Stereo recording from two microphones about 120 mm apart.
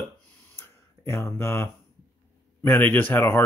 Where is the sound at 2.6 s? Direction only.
15° left (ahead or behind).